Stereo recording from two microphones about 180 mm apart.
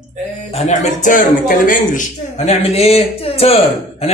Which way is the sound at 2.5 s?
35° left (ahead or behind).